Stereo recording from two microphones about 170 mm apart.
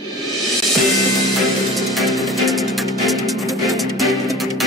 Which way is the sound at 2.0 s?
Centre (ahead or behind).